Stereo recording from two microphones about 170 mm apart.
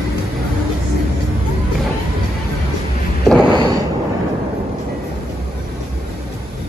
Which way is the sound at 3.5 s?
25° right (ahead or behind).